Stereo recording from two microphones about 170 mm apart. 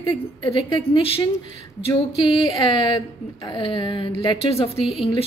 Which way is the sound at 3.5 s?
30° left (ahead or behind).